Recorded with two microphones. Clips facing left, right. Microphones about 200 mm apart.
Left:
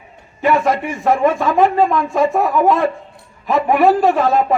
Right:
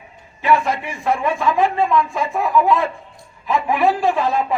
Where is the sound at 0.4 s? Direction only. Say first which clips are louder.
Left 3 dB; 50° left (ahead or behind).